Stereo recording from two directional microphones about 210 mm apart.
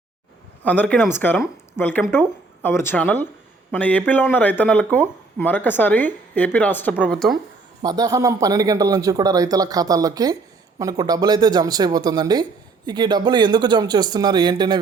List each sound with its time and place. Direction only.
0.6 s speech: 5° left (ahead or behind)
7.8 s speech: 20° right (ahead or behind)